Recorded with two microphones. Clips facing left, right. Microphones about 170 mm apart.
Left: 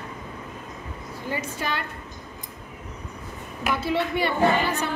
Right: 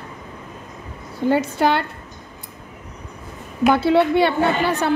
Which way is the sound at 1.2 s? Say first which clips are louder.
Right 12 dB; 70° right (ahead or behind).